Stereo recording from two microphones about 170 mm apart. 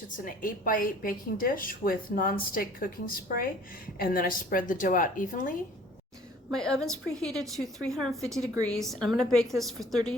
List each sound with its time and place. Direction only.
0.3 s a woman's voice: 55° left (ahead or behind)
6.5 s a woman's voice: 5° left (ahead or behind)